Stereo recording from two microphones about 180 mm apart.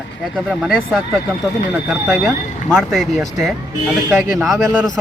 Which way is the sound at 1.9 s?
Centre (ahead or behind).